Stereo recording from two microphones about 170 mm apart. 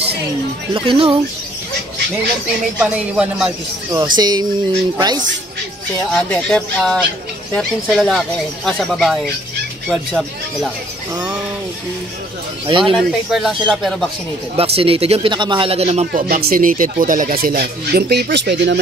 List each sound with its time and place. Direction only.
0.7 s speech: 30° right (ahead or behind)
2.8 s speech: 5° right (ahead or behind)
3.9 s speech: 25° right (ahead or behind)
6.3 s speech: 5° left (ahead or behind)
12.6 s speech: 30° right (ahead or behind)
12.9 s speech: centre (ahead or behind)
14.6 s speech: 35° right (ahead or behind)
16.1 s speech: 60° right (ahead or behind); by 18.8 s 90° right